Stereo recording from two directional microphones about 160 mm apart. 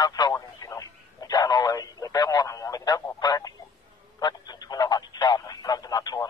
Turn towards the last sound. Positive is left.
turn(degrees=20)  # may be behind; listen again after turning